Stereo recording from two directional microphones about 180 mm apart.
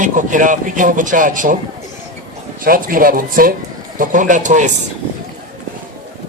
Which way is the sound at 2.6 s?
50° right (ahead or behind).